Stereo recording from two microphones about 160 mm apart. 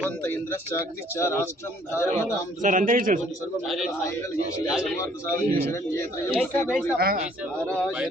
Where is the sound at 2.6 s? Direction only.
55° right (ahead or behind).